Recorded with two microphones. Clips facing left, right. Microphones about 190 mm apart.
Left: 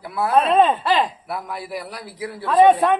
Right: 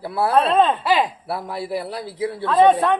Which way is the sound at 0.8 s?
10° right (ahead or behind).